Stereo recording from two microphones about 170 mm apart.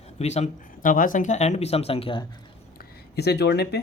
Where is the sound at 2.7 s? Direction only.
70° left (ahead or behind).